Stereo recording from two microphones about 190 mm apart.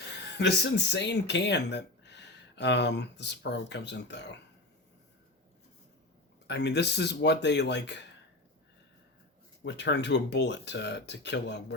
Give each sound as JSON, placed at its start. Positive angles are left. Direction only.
{"t": 0.2, "sound": "speech", "side_deg": 60}
{"t": 6.5, "sound": "speech", "side_deg": 60}
{"t": 9.6, "sound": "speech", "side_deg": 65}